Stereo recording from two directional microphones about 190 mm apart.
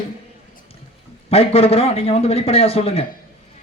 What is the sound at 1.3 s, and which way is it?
A man's voice, 30° left (ahead or behind).